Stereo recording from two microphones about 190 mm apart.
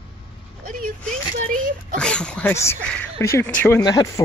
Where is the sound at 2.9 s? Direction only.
10° left (ahead or behind).